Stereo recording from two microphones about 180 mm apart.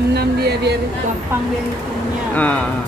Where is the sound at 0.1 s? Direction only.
60° right (ahead or behind).